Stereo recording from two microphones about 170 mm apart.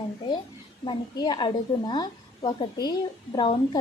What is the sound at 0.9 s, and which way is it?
A woman's voice, 25° left (ahead or behind).